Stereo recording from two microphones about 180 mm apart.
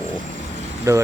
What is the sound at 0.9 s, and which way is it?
Speech, 15° right (ahead or behind).